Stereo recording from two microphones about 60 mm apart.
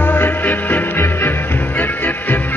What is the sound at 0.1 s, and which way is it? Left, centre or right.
Music, left.